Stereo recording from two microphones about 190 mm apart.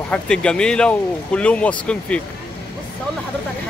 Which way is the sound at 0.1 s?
5° left (ahead or behind).